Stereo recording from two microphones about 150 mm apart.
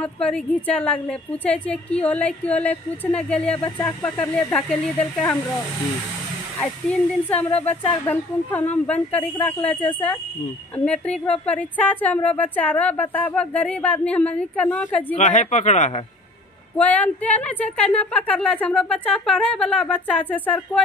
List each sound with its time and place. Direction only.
0.0 s speech: 5° left (ahead or behind)
6.6 s speech: 10° left (ahead or behind)
15.1 s speech: 55° left (ahead or behind)
16.7 s speech: 10° left (ahead or behind)